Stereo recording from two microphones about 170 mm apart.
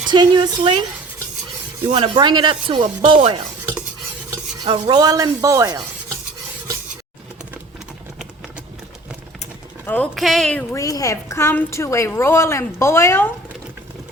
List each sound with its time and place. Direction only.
0.1 s speech: 25° right (ahead or behind)
1.9 s speech: 25° right (ahead or behind)
4.3 s stir: 30° right (ahead or behind)
9.8 s a woman's voice: 10° left (ahead or behind)